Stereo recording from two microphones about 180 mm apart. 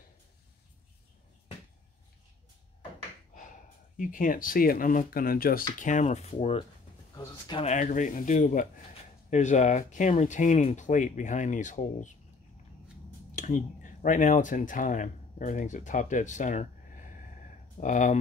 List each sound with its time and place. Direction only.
3.9 s speech: 50° left (ahead or behind)
7.2 s speech: 25° left (ahead or behind)
7.6 s speech: 45° left (ahead or behind)
13.3 s speech: 45° left (ahead or behind)